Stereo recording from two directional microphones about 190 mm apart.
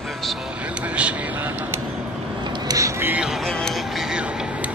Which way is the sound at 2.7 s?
15° right (ahead or behind).